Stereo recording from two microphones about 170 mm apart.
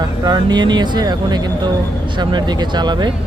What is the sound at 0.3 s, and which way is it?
Speech, 25° right (ahead or behind).